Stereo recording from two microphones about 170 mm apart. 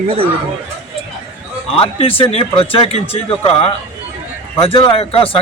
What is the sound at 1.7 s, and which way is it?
Speech, 35° left (ahead or behind).